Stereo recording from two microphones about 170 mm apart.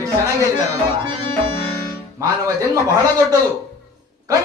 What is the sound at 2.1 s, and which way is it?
Speech, 20° right (ahead or behind).